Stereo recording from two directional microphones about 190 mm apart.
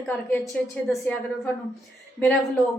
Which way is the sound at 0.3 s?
10° left (ahead or behind).